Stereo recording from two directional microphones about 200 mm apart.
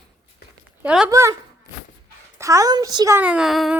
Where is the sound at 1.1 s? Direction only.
15° right (ahead or behind).